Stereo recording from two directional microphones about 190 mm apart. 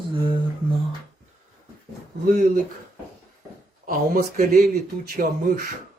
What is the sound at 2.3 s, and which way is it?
Speech, 50° right (ahead or behind).